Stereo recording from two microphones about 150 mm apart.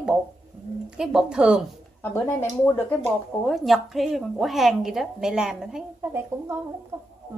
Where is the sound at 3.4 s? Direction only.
Centre (ahead or behind).